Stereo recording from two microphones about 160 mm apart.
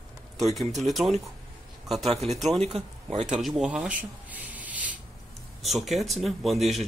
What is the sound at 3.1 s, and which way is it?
Speech, 45° right (ahead or behind).